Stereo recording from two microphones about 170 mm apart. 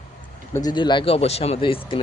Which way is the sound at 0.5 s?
25° left (ahead or behind).